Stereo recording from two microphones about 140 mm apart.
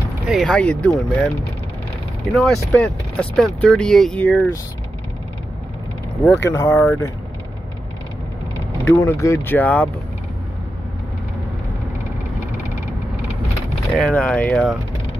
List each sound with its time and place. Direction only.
0.3 s speech: 5° left (ahead or behind)
6.2 s speech: 15° left (ahead or behind)
8.9 s speech: 20° left (ahead or behind)
13.9 s speech: 5° left (ahead or behind)